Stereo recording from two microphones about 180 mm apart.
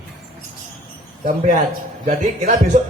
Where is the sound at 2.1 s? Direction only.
50° right (ahead or behind).